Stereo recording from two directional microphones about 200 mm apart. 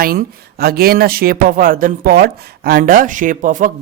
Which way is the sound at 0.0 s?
45° right (ahead or behind).